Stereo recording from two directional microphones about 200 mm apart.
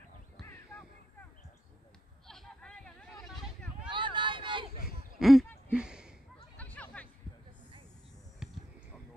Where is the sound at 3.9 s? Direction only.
25° right (ahead or behind).